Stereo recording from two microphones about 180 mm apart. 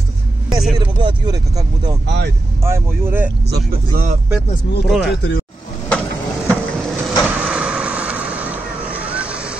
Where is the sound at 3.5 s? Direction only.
45° right (ahead or behind).